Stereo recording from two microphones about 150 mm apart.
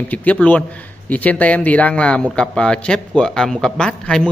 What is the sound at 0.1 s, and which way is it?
A man's voice, 10° left (ahead or behind).